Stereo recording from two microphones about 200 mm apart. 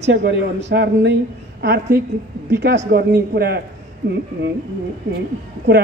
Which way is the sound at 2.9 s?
55° right (ahead or behind).